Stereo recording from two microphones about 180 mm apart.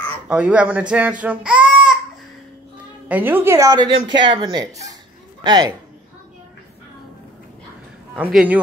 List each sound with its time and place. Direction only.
0.3 s speech: 5° right (ahead or behind)
1.2 s child singing: 5° right (ahead or behind)
3.1 s speech: 10° right (ahead or behind)
8.2 s speech: 5° right (ahead or behind)